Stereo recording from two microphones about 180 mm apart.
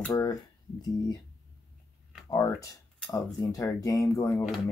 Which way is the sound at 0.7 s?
20° left (ahead or behind).